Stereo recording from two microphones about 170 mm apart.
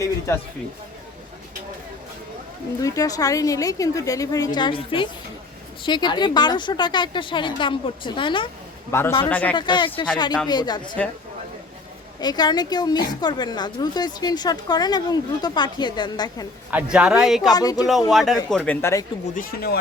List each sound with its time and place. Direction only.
0.3 s speech: 15° left (ahead or behind)
2.8 s a woman's voice: 20° left (ahead or behind)
8.9 s speech: 15° left (ahead or behind)
9.6 s a woman's voice: 25° left (ahead or behind)
11.0 s speech: 5° left (ahead or behind)
12.2 s a woman's voice: 25° left (ahead or behind)
16.7 s speech: 5° right (ahead or behind)
17.5 s a woman's voice: 20° left (ahead or behind)
18.1 s speech: centre (ahead or behind); by 19.0 s 15° left (ahead or behind)
19.4 s speech: 65° left (ahead or behind)